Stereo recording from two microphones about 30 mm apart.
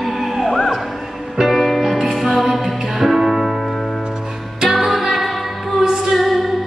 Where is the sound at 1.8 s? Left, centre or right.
Centre.